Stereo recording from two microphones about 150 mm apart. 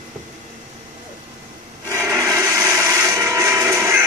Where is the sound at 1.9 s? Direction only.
20° right (ahead or behind).